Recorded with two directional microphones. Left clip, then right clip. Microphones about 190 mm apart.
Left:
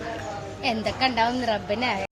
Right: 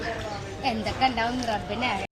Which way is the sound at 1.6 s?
55° left (ahead or behind).